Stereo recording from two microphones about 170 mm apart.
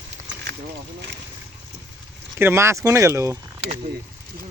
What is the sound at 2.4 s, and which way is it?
Speech, 15° right (ahead or behind).